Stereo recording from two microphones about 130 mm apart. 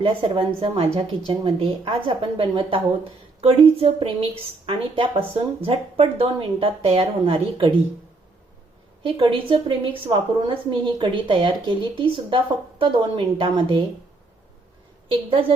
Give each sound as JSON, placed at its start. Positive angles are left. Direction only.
{"t": 0.0, "sound": "a woman's voice", "side_deg": -45}
{"t": 9.0, "sound": "a woman's voice", "side_deg": -45}
{"t": 15.1, "sound": "a woman's voice", "side_deg": -45}